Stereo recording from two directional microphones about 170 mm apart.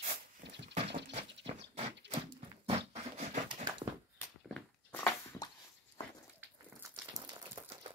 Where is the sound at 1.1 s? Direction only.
40° right (ahead or behind).